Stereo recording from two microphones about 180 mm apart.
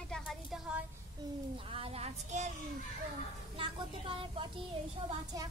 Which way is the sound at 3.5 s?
30° right (ahead or behind).